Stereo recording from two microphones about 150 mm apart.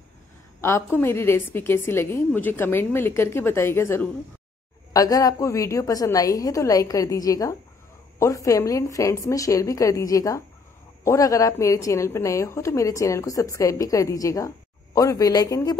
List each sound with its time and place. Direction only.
0.6 s a woman's voice: 15° left (ahead or behind)